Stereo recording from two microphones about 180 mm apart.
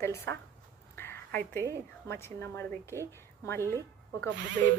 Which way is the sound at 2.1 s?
15° left (ahead or behind).